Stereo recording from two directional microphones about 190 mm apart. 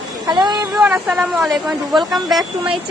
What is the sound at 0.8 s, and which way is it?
A woman's voice, 5° right (ahead or behind).